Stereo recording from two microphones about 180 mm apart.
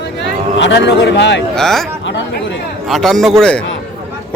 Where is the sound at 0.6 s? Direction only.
75° left (ahead or behind).